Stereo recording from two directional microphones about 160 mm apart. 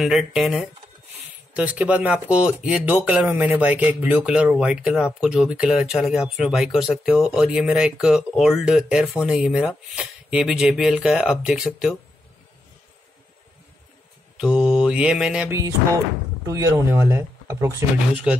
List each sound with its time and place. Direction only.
0.0 s speech: centre (ahead or behind)
14.3 s mantra: 5° right (ahead or behind)
16.4 s speech: 20° right (ahead or behind)
18.1 s speech: 5° right (ahead or behind)